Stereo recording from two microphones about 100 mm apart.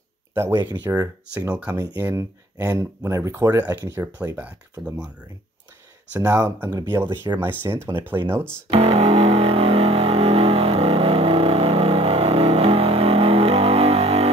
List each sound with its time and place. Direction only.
0.3 s speech: 25° right (ahead or behind)
1.5 s speech: 10° right (ahead or behind)
2.0 s speech: 30° right (ahead or behind); by 5.1 s 10° right (ahead or behind)
6.1 s speech: 35° right (ahead or behind)
8.6 s music: 80° right